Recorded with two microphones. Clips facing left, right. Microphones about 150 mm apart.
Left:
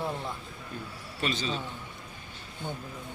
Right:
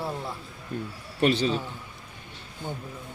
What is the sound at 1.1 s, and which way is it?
Speech, 60° right (ahead or behind).